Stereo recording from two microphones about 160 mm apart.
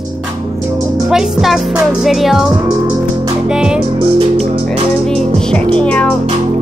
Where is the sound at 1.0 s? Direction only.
5° right (ahead or behind).